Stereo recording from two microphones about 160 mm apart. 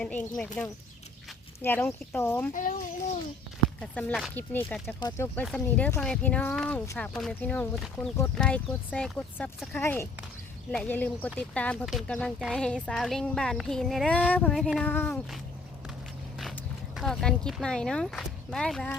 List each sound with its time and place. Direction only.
0.0 s speech: 10° left (ahead or behind)
1.6 s speech: 10° left (ahead or behind)
2.5 s speech: 55° left (ahead or behind)
3.8 s speech: 5° left (ahead or behind)
4.9 s speech: 20° left (ahead or behind)
16.4 s speech: centre (ahead or behind)